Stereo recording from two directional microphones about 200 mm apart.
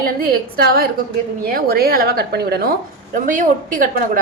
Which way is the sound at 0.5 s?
50° right (ahead or behind).